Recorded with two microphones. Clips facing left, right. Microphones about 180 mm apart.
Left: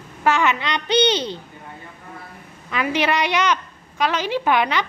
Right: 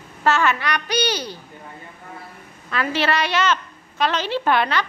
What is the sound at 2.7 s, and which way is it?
A woman's voice, 15° left (ahead or behind).